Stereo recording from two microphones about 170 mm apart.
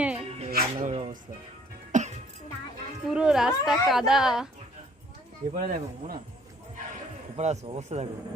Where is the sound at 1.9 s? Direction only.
45° right (ahead or behind).